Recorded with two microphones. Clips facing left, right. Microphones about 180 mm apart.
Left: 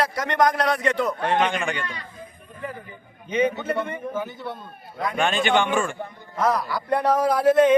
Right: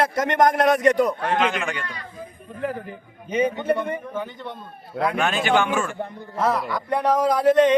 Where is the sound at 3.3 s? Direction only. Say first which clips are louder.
Even; 35° right (ahead or behind).